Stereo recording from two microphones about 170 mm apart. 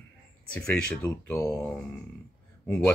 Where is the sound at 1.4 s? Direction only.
20° left (ahead or behind).